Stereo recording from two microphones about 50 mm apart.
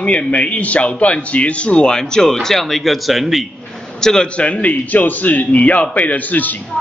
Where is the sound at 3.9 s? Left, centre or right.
Centre.